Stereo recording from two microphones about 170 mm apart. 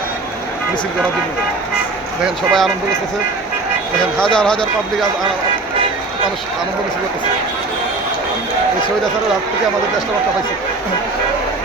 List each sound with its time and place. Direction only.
2.2 s speech: centre (ahead or behind)
4.2 s speech: 5° left (ahead or behind)